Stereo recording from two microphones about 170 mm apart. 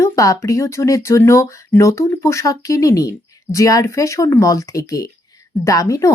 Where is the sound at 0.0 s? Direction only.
20° left (ahead or behind).